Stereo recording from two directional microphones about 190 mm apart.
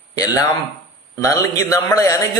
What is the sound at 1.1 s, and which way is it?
A man's voice, 20° left (ahead or behind).